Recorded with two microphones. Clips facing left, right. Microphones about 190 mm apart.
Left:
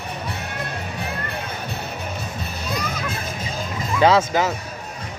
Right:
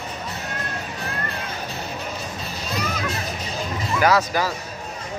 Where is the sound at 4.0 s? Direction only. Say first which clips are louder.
Left 3 dB; 25° left (ahead or behind).